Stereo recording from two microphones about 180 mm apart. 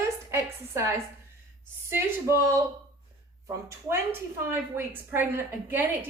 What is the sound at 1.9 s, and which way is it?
A woman's voice, 15° right (ahead or behind).